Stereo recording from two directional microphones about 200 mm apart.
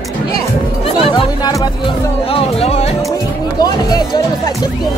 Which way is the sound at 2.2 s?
30° left (ahead or behind).